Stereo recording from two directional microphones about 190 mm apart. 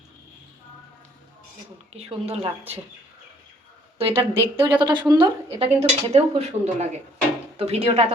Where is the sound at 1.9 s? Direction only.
35° right (ahead or behind).